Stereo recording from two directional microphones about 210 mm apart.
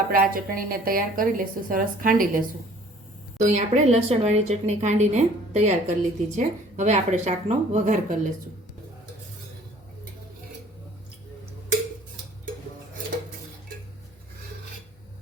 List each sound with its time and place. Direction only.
0.1 s a woman's voice: 40° right (ahead or behind)
3.3 s a woman's voice: 35° right (ahead or behind)